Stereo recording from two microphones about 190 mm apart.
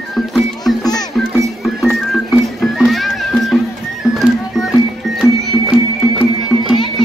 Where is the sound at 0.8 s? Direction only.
20° left (ahead or behind).